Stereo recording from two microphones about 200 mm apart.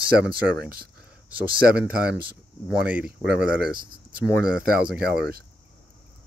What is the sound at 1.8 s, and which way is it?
Speech, 5° right (ahead or behind).